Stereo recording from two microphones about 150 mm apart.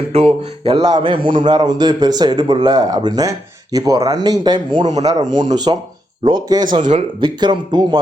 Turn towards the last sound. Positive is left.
turn(degrees=-30)  # may be behind; listen again after turning